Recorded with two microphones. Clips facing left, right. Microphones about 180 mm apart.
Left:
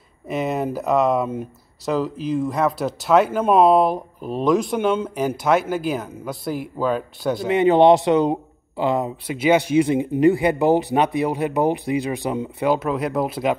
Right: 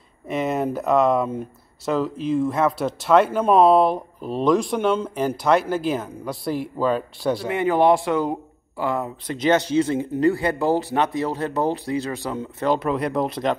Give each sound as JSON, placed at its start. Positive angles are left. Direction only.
{"t": 0.3, "sound": "speech", "side_deg": 0}
{"t": 7.4, "sound": "speech", "side_deg": 20}
{"t": 12.7, "sound": "speech", "side_deg": 0}